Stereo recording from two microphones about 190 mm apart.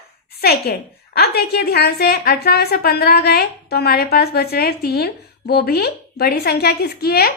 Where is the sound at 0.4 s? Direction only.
55° left (ahead or behind).